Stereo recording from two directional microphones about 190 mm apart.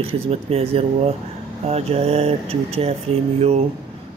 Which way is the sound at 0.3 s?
30° right (ahead or behind).